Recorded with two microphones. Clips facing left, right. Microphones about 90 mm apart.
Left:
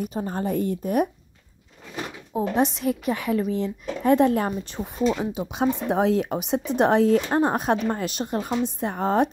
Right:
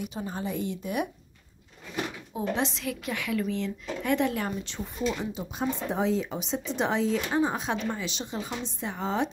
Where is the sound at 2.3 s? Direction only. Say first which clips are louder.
Left 7 dB; 35° left (ahead or behind).